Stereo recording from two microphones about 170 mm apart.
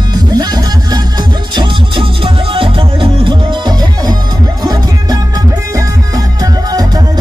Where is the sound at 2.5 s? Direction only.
30° right (ahead or behind).